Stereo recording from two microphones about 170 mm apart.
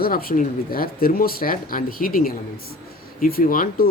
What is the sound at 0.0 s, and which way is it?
Speech, 60° left (ahead or behind).